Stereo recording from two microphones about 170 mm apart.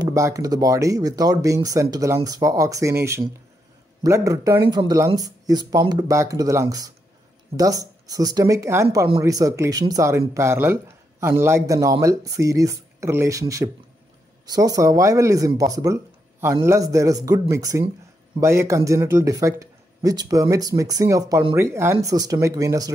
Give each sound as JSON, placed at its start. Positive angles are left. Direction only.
{"t": 0.0, "sound": "speech", "side_deg": -20}